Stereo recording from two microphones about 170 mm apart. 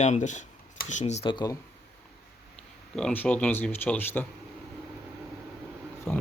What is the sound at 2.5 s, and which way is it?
Speech, 5° left (ahead or behind).